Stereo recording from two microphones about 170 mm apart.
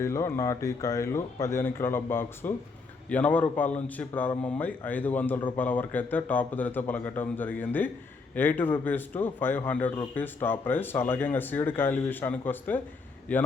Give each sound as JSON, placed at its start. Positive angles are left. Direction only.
{"t": 0.0, "sound": "speech", "side_deg": 15}